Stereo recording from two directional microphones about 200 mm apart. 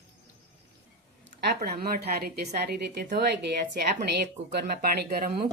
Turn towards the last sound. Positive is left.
turn(degrees=-50)  # may be behind; listen again after turning